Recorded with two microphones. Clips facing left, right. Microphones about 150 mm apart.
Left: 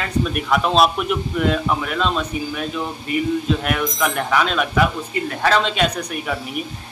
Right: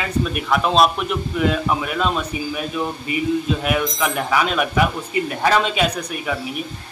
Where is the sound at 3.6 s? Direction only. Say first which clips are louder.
Even; 5° right (ahead or behind).